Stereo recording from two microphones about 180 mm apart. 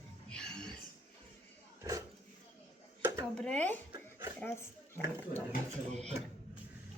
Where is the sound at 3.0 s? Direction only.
20° right (ahead or behind).